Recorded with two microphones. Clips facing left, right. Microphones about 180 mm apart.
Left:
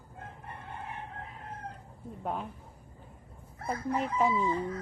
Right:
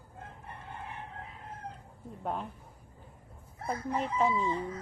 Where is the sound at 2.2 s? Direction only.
Centre (ahead or behind).